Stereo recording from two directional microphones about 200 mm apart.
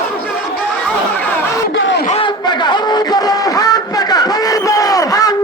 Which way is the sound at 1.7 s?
65° left (ahead or behind).